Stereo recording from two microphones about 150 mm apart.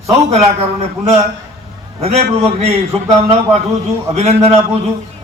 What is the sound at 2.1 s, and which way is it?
A man's voice, 45° right (ahead or behind).